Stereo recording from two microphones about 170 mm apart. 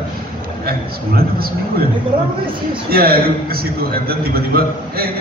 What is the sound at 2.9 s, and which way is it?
A man's voice, 60° right (ahead or behind).